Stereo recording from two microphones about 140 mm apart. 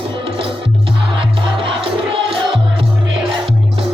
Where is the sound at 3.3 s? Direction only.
40° right (ahead or behind).